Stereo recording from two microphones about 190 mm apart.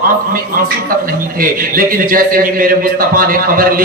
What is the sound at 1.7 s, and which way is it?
Speech, 45° right (ahead or behind).